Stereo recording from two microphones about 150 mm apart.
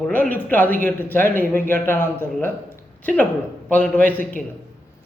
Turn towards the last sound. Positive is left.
turn(degrees=10)  # may be behind; listen again after turning